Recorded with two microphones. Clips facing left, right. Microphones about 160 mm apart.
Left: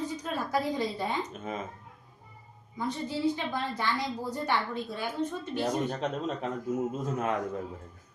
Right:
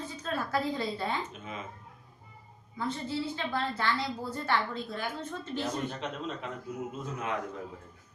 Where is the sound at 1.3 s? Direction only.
40° left (ahead or behind).